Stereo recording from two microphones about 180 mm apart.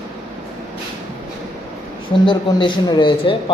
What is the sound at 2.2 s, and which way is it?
Speech, 25° left (ahead or behind).